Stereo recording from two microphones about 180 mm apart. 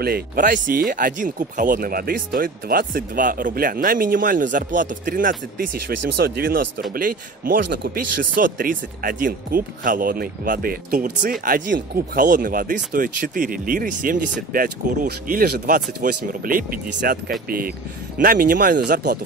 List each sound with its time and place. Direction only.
0.0 s speech: 55° right (ahead or behind)